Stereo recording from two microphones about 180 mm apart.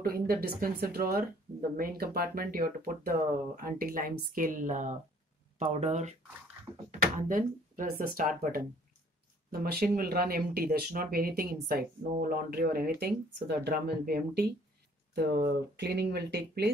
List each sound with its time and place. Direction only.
0.0 s speech: 55° right (ahead or behind)
15.8 s speech: 65° right (ahead or behind)